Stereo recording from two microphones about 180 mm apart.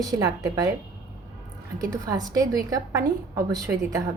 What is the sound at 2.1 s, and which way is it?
A woman's voice, 20° right (ahead or behind).